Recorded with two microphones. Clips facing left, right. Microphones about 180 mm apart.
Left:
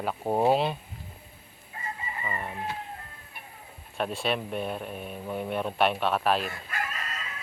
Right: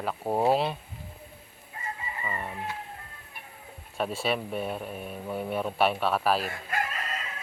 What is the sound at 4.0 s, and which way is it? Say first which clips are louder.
Speech: even; 5° right (ahead or behind).